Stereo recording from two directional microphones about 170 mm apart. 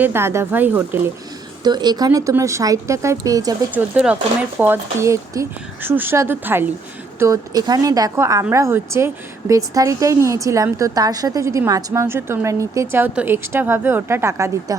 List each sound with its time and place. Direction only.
0.0 s a woman's voice: 15° right (ahead or behind)
1.6 s a woman's voice: 25° right (ahead or behind)
3.9 s a woman's voice: 5° right (ahead or behind)